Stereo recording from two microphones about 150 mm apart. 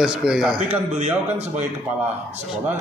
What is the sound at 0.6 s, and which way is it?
Speech, 45° right (ahead or behind).